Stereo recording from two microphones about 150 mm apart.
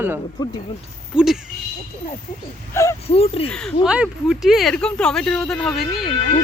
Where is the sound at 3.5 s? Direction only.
5° left (ahead or behind).